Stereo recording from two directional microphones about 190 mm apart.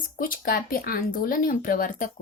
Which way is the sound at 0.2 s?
50° left (ahead or behind).